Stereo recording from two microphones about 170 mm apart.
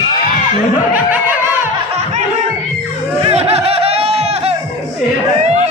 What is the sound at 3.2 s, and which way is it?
Chatter, 35° right (ahead or behind).